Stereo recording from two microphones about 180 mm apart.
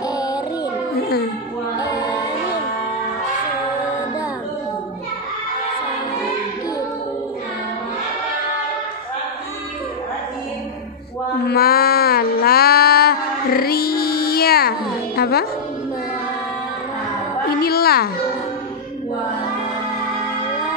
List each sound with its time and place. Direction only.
0.1 s child singing: 20° left (ahead or behind)
1.8 s music: 25° left (ahead or behind)
11.4 s music: 55° left (ahead or behind)
17.6 s a sound: 60° left (ahead or behind)